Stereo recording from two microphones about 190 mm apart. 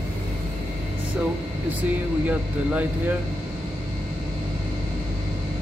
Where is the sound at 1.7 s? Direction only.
10° right (ahead or behind).